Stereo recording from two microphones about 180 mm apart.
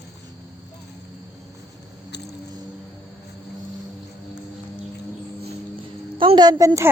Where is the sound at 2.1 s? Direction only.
70° left (ahead or behind).